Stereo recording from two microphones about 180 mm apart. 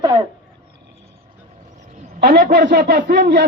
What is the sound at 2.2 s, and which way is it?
A man's voice, 60° right (ahead or behind).